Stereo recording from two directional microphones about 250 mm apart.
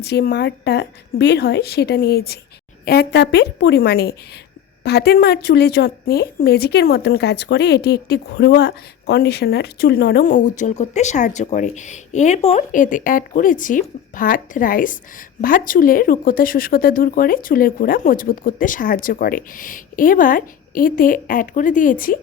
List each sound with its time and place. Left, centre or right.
0.0 s speech: left